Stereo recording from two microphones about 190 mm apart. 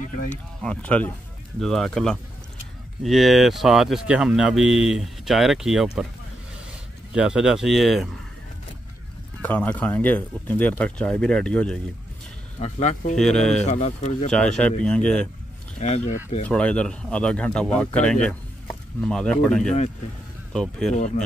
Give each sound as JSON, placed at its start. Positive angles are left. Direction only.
{"t": 0.0, "sound": "speech", "side_deg": 40}
{"t": 0.6, "sound": "speech", "side_deg": 5}
{"t": 7.2, "sound": "speech", "side_deg": -5}
{"t": 9.4, "sound": "speech", "side_deg": 5}
{"t": 12.5, "sound": "speech", "side_deg": 35}
{"t": 13.1, "sound": "speech", "side_deg": 5}
{"t": 13.7, "sound": "speech", "side_deg": 35}
{"t": 14.3, "sound": "speech", "side_deg": 5}
{"t": 15.8, "sound": "speech", "side_deg": 40}
{"t": 16.4, "sound": "speech", "side_deg": 5}
{"t": 20.9, "sound": "speech", "side_deg": 40}